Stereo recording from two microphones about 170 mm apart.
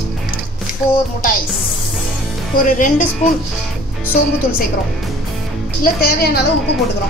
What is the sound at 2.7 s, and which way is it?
Speech, 50° left (ahead or behind).